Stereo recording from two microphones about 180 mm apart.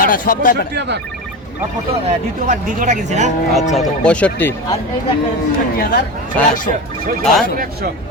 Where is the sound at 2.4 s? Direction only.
45° right (ahead or behind).